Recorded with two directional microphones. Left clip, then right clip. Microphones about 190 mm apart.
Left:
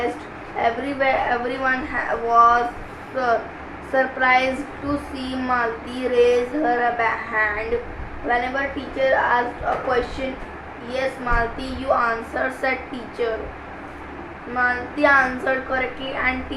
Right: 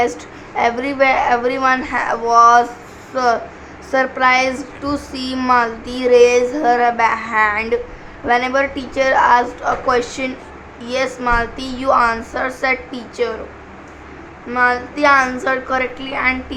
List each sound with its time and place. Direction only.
0.5 s child singing: 40° right (ahead or behind)
8.3 s a woman's voice: 45° right (ahead or behind)
10.8 s child singing: 40° right (ahead or behind)
14.5 s child singing: 35° right (ahead or behind)